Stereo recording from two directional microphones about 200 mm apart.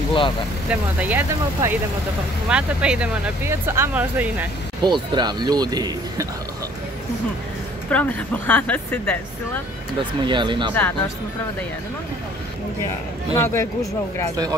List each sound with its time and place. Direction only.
0.7 s speech: 10° right (ahead or behind)
4.8 s speech: 20° right (ahead or behind)
7.9 s speech: 10° left (ahead or behind)
10.2 s speech: 25° right (ahead or behind)
10.7 s speech: 10° left (ahead or behind)
13.3 s speech: 15° left (ahead or behind)